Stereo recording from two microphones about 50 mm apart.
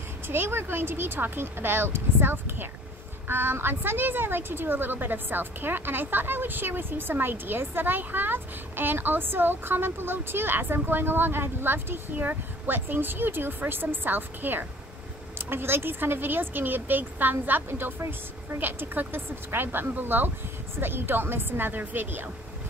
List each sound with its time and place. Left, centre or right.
0.3 s a woman's voice: right